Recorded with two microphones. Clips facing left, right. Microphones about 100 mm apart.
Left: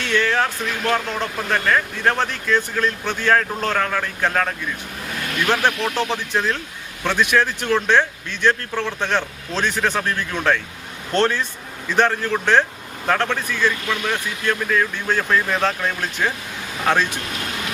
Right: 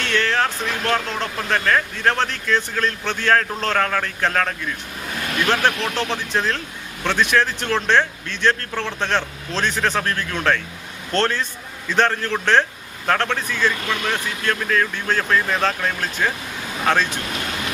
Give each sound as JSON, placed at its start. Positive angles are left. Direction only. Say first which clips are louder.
{"t": 0.0, "sound": "speech", "louder": "left 1 dB", "side_deg": 15}
{"t": 13.3, "sound": "speech", "louder": "even", "side_deg": -15}
{"t": 13.7, "sound": "speech", "louder": "even", "side_deg": 15}